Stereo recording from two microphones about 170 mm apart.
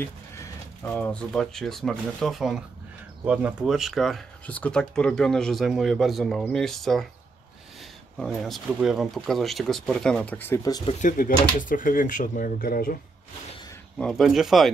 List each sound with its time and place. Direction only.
0.0 s speech: 10° left (ahead or behind)
8.2 s speech: 5° left (ahead or behind)
10.9 s speech: 50° left (ahead or behind)
13.9 s speech: centre (ahead or behind)